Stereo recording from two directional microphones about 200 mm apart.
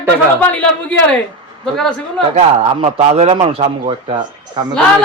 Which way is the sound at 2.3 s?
30° right (ahead or behind).